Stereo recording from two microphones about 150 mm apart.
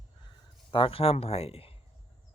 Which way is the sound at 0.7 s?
35° left (ahead or behind).